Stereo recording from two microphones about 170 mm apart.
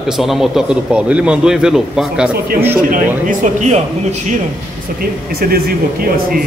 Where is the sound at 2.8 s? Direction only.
50° right (ahead or behind).